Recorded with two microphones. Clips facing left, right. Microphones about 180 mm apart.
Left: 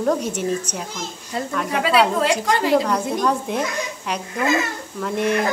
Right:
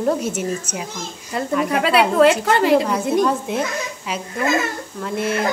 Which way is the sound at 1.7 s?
60° right (ahead or behind).